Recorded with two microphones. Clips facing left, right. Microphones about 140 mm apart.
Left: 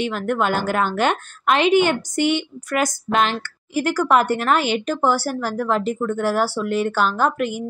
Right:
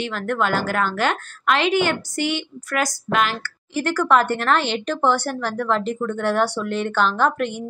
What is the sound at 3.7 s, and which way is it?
A woman's voice, 10° left (ahead or behind).